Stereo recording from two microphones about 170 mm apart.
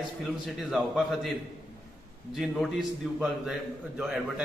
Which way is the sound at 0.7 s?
Centre (ahead or behind).